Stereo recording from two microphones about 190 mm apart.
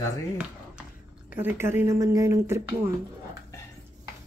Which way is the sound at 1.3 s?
10° right (ahead or behind).